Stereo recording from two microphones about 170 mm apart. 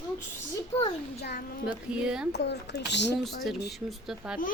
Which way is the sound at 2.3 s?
85° left.